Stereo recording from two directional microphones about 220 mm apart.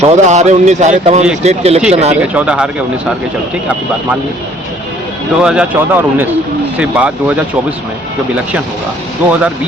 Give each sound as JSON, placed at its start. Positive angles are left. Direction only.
{"t": 0.0, "sound": "speech", "side_deg": -30}
{"t": 2.3, "sound": "speech", "side_deg": -5}
{"t": 5.4, "sound": "speech", "side_deg": -5}